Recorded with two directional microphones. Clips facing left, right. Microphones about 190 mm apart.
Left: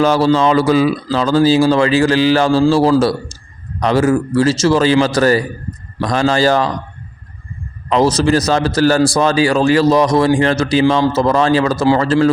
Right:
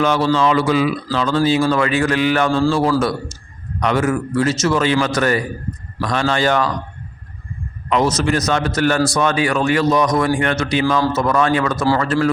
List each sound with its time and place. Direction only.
0.0 s a man's voice: 35° left (ahead or behind)
7.9 s a man's voice: 30° left (ahead or behind)